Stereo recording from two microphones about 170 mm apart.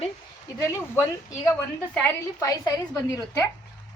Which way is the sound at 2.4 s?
20° left (ahead or behind).